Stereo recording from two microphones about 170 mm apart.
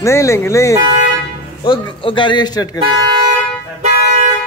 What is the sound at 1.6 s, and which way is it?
A man's voice, 30° left (ahead or behind).